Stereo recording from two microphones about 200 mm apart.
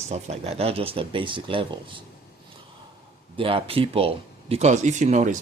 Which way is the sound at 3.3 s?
25° right (ahead or behind).